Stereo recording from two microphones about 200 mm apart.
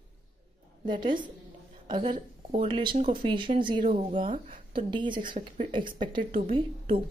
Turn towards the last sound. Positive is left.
turn(degrees=-30)  # may be behind; listen again after turning